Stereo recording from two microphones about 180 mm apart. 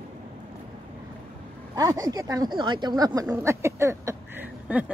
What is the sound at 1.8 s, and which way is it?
Speech, 20° right (ahead or behind).